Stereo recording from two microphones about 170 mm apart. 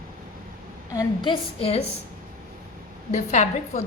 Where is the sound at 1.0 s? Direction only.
30° left (ahead or behind).